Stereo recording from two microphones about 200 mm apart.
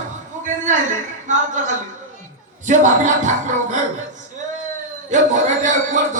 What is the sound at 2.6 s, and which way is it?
Speech, 40° right (ahead or behind).